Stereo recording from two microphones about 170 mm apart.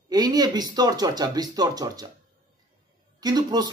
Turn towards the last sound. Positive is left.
turn(degrees=-25)  # may be behind; listen again after turning